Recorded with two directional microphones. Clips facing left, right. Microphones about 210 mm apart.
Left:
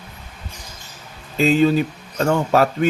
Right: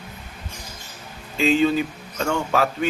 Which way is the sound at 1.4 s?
40° left (ahead or behind).